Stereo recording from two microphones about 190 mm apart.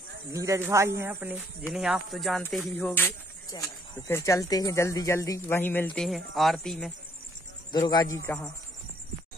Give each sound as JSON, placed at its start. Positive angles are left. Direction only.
{"t": 0.3, "sound": "speech", "side_deg": -15}
{"t": 5.9, "sound": "speech", "side_deg": 0}
{"t": 7.7, "sound": "speech", "side_deg": 20}